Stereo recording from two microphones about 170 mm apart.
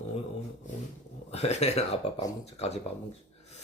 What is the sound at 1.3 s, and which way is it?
Speech, 40° left (ahead or behind).